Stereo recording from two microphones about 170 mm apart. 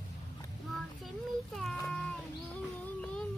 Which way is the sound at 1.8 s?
5° left (ahead or behind).